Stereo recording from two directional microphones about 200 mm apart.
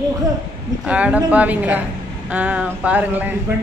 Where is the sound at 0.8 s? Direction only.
5° right (ahead or behind).